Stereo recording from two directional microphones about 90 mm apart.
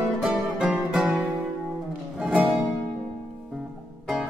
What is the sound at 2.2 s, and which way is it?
Music, 15° right (ahead or behind).